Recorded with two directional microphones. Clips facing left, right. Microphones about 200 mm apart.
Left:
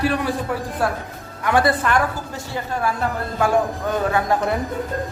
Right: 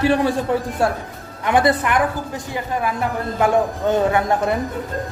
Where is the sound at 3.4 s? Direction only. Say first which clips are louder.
Right 2 dB; 25° right (ahead or behind).